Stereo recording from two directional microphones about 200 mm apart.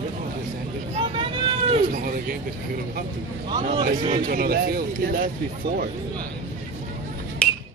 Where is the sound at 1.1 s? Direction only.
25° right (ahead or behind).